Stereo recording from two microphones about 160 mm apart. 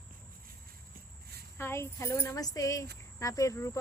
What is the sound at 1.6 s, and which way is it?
Speech, 15° left (ahead or behind).